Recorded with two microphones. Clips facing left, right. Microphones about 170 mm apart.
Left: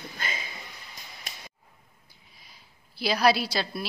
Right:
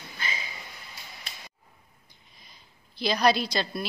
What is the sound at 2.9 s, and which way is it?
Speech, 5° left (ahead or behind).